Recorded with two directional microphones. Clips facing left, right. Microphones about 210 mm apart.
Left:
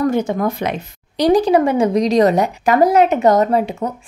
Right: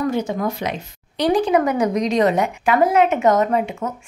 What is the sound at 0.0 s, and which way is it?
Speech, 50° left (ahead or behind).